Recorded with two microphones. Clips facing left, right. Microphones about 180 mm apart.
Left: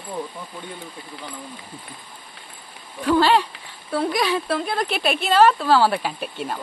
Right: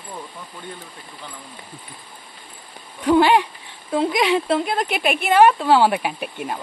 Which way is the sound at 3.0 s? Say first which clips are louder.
Right 2 dB; 15° right (ahead or behind).